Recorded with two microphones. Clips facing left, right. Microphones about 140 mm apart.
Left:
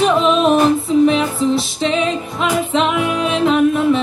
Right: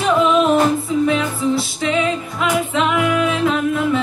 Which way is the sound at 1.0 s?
25° left (ahead or behind).